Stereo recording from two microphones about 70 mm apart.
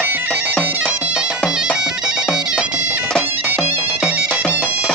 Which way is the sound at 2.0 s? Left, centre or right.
Centre.